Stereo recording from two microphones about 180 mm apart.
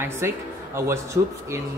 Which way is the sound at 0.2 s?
15° right (ahead or behind).